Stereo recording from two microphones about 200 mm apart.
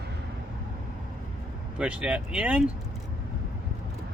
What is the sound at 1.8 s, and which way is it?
Speech, 5° right (ahead or behind).